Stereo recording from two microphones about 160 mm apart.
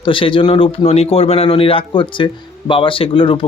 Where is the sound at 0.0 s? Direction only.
30° left (ahead or behind).